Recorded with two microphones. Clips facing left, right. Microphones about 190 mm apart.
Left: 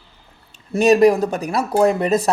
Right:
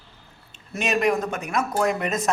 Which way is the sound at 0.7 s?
35° left (ahead or behind).